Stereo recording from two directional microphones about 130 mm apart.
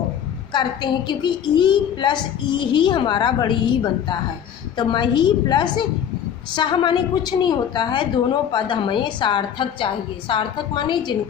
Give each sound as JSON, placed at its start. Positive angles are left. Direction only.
{"t": 0.5, "sound": "a woman's voice", "side_deg": 35}